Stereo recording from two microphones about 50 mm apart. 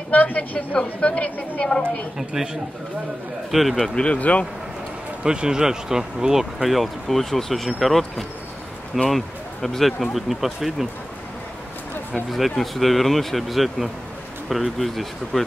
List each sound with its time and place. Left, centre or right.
0.1 s a woman's voice: left
2.1 s speech: centre
3.9 s a woman's voice: centre
5.2 s speech: centre
12.3 s speech: centre